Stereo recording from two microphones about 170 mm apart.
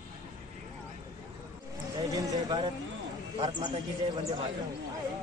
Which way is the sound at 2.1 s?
20° right (ahead or behind).